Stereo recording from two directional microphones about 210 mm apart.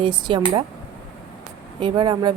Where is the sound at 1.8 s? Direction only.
25° right (ahead or behind).